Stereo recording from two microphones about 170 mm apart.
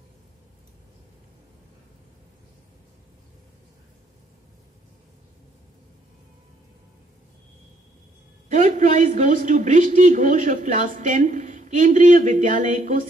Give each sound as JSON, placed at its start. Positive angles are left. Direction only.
{"t": 8.5, "sound": "a man's voice", "side_deg": -45}